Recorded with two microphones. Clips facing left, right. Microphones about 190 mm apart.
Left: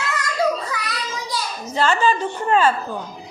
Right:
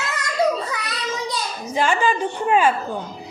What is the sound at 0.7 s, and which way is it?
Child singing, 25° right (ahead or behind).